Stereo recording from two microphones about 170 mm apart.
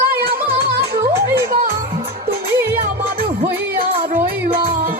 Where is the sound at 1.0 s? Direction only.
15° right (ahead or behind).